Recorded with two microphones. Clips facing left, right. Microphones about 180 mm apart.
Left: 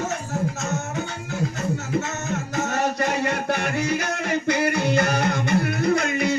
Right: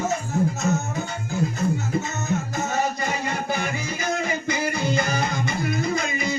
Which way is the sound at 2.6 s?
70° left (ahead or behind).